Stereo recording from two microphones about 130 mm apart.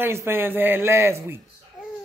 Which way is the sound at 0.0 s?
20° right (ahead or behind).